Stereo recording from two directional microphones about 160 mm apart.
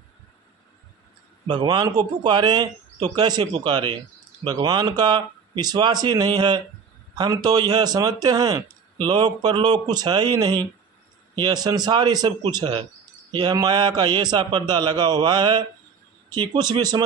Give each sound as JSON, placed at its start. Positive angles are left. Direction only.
{"t": 1.5, "sound": "a man's voice", "side_deg": -25}